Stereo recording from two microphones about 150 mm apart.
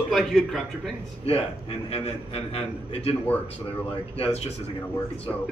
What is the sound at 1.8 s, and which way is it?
A man's voice, 45° left (ahead or behind).